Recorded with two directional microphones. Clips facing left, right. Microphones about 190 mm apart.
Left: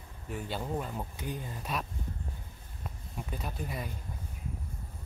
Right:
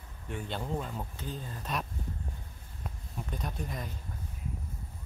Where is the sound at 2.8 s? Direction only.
5° left (ahead or behind).